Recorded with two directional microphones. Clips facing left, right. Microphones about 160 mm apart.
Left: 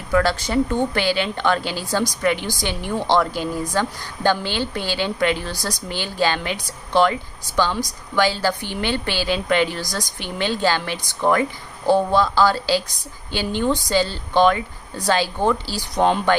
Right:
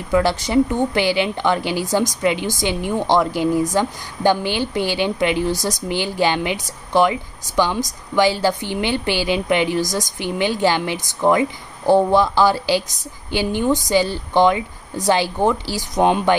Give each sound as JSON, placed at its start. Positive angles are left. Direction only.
{"t": 0.1, "sound": "a woman's voice", "side_deg": -20}